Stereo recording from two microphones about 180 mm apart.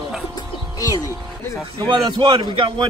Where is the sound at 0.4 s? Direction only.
20° left (ahead or behind).